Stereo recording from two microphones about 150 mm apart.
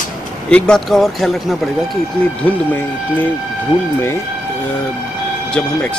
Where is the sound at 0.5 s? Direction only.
5° left (ahead or behind).